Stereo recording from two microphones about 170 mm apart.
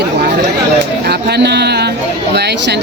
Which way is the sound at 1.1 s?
75° right (ahead or behind).